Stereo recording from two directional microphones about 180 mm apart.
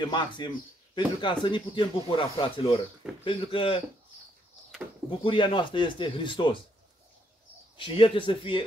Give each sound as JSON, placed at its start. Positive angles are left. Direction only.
{"t": 0.0, "sound": "speech", "side_deg": 25}
{"t": 5.2, "sound": "speech", "side_deg": 30}
{"t": 7.7, "sound": "speech", "side_deg": 30}